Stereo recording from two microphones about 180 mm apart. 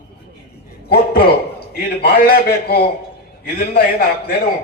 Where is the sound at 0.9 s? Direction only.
60° left (ahead or behind).